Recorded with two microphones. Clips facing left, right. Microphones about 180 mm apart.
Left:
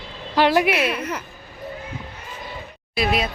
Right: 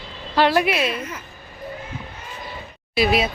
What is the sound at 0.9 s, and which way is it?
Speech, 70° left (ahead or behind).